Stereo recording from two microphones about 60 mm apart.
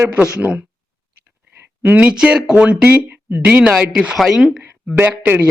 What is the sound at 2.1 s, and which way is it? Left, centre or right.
Speech, centre.